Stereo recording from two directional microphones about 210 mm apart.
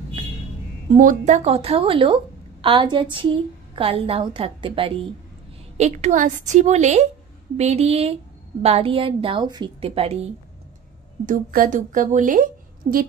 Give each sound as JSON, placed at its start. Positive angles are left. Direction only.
{"t": 0.8, "sound": "a woman's voice", "side_deg": -35}
{"t": 11.2, "sound": "a woman's voice", "side_deg": -40}